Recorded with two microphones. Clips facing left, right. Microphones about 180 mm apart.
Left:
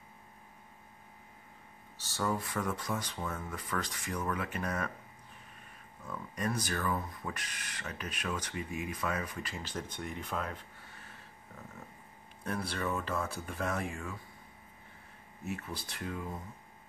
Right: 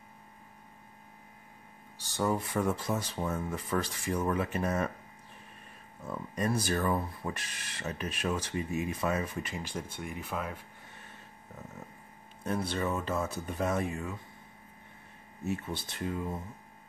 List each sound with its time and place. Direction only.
2.0 s speech: 15° right (ahead or behind)
6.0 s speech: 25° right (ahead or behind); by 10.6 s 5° right (ahead or behind)
12.4 s speech: 20° right (ahead or behind)
15.4 s speech: 25° right (ahead or behind)